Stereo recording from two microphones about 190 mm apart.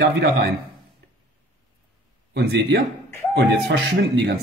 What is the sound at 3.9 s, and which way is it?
Speech, 55° right (ahead or behind).